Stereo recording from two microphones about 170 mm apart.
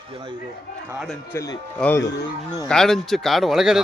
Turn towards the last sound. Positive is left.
turn(degrees=0)  # may be behind; listen again after turning